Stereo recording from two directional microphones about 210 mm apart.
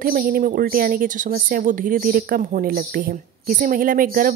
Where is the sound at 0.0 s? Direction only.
45° right (ahead or behind).